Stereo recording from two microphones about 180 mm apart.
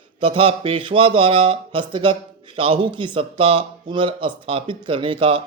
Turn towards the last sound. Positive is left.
turn(degrees=-30)  # may be behind; listen again after turning